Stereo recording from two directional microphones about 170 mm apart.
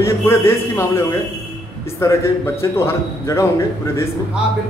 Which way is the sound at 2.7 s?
15° left (ahead or behind).